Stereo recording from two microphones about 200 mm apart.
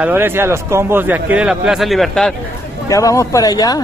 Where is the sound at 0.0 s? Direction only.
10° right (ahead or behind).